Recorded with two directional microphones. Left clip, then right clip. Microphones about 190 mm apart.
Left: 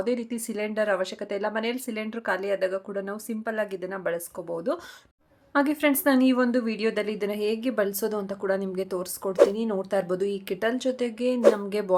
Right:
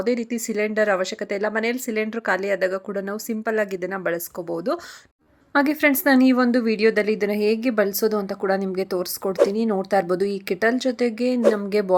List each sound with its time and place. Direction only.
0.0 s a woman's voice: 15° right (ahead or behind)
9.3 s speech: centre (ahead or behind)
9.6 s a woman's voice: 25° right (ahead or behind)